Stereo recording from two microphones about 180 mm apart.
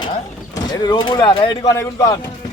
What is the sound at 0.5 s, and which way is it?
Speech, 20° left (ahead or behind).